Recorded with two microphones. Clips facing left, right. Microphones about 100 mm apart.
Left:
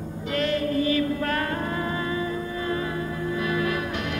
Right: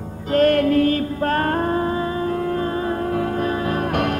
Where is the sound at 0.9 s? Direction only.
40° right (ahead or behind).